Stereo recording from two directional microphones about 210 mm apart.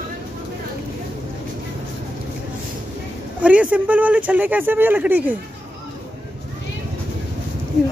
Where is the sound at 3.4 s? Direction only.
5° right (ahead or behind).